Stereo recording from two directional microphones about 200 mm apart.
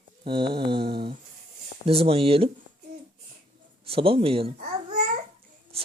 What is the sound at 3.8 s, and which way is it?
Speech, 30° right (ahead or behind).